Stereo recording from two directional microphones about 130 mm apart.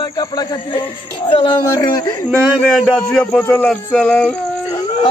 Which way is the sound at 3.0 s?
10° left (ahead or behind).